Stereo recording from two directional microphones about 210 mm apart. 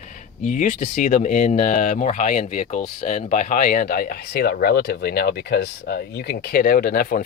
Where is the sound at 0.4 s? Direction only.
35° left (ahead or behind).